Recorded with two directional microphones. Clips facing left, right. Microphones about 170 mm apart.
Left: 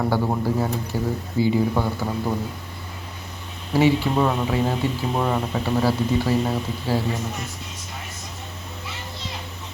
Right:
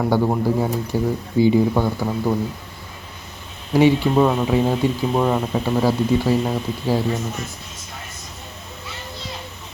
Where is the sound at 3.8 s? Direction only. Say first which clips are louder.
Right 4 dB; 15° right (ahead or behind).